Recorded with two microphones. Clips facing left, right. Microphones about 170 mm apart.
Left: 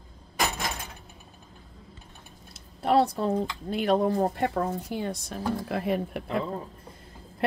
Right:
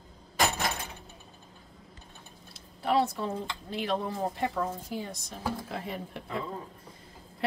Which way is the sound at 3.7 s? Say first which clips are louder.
Left 8 dB; 55° left (ahead or behind).